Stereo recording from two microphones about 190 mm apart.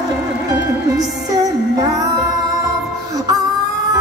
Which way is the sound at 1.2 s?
20° right (ahead or behind).